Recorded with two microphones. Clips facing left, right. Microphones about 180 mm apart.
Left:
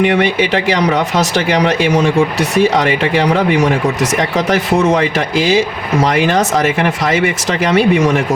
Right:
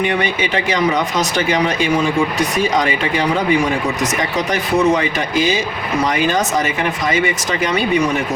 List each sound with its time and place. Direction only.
0.0 s speech: 75° left (ahead or behind)
4.2 s speech: 90° left